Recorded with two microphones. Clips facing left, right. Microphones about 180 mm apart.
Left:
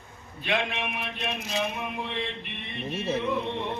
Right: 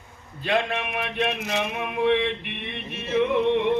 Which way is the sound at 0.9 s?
65° right (ahead or behind).